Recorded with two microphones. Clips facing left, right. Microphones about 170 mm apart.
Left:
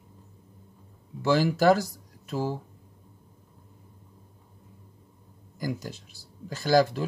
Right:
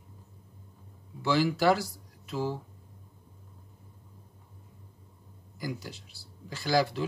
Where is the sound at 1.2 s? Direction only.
45° left (ahead or behind).